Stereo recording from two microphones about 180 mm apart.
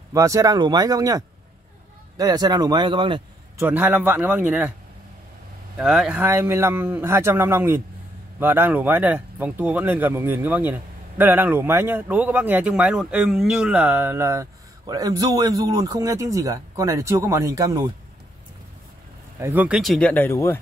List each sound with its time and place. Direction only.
0.1 s speech: 20° right (ahead or behind)
3.5 s speech: 10° right (ahead or behind)
5.8 s speech: 5° right (ahead or behind); by 17.9 s 20° right (ahead or behind)
19.4 s speech: 10° right (ahead or behind); by 20.5 s 15° left (ahead or behind)